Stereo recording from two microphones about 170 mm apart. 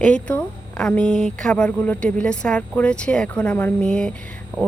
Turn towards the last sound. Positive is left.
turn(degrees=5)  # may be behind; listen again after turning